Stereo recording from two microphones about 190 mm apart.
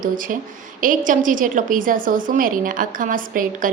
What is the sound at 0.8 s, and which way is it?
A woman's voice, 45° right (ahead or behind).